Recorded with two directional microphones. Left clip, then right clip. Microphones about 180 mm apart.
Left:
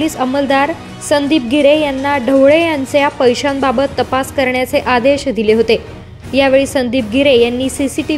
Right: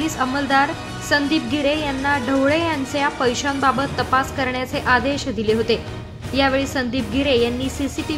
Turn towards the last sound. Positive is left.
turn(degrees=25)  # may be behind; listen again after turning